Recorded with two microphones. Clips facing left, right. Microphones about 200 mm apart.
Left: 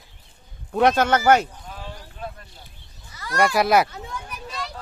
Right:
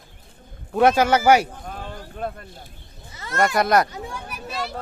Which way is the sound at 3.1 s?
25° right (ahead or behind).